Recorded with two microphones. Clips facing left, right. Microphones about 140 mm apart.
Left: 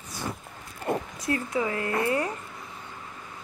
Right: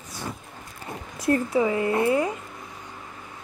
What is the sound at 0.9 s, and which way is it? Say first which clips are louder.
Speech: left 10 dB; 65° left (ahead or behind).